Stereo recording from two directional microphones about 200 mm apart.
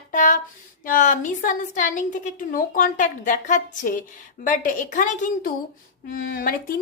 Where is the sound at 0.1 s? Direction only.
40° left (ahead or behind).